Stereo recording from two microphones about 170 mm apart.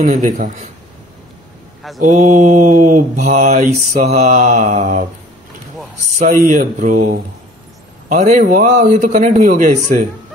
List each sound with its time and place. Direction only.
0.0 s a man's voice: 45° right (ahead or behind)
2.0 s a man's voice: 50° right (ahead or behind)
6.1 s a man's voice: 55° right (ahead or behind)